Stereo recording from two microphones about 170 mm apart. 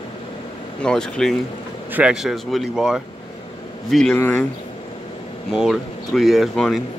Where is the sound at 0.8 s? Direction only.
5° left (ahead or behind).